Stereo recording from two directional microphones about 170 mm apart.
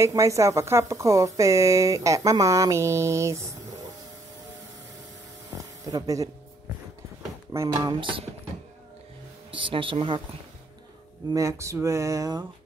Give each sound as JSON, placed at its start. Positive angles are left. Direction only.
{"t": 0.0, "sound": "speech", "side_deg": -15}
{"t": 5.9, "sound": "speech", "side_deg": -20}
{"t": 7.5, "sound": "speech", "side_deg": -20}
{"t": 9.5, "sound": "speech", "side_deg": -30}
{"t": 11.3, "sound": "speech", "side_deg": -20}